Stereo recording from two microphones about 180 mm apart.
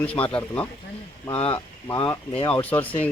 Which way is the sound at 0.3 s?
10° left (ahead or behind).